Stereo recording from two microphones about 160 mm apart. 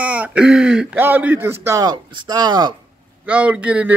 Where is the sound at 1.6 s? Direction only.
25° right (ahead or behind).